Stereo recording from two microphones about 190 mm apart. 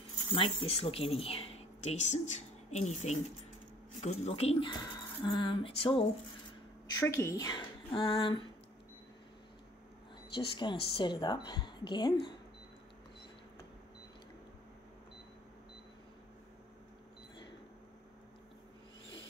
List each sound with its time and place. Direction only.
0.3 s speech: 30° left (ahead or behind)
7.0 s speech: 15° left (ahead or behind)
10.3 s speech: 25° left (ahead or behind)